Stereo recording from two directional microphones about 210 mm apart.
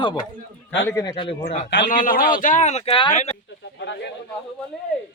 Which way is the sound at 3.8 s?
55° left (ahead or behind).